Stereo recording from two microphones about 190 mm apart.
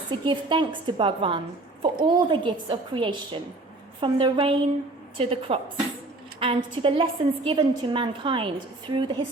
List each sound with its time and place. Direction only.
0.1 s a woman's voice: 25° right (ahead or behind)